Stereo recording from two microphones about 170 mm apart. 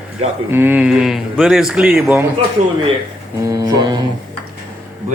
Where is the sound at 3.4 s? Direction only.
20° right (ahead or behind).